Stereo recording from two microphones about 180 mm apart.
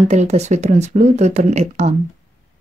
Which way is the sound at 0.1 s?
40° right (ahead or behind).